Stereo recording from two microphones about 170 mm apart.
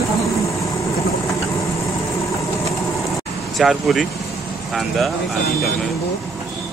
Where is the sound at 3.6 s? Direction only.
Centre (ahead or behind).